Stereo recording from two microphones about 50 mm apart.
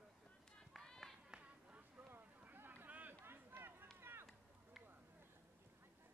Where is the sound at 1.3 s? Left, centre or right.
Centre.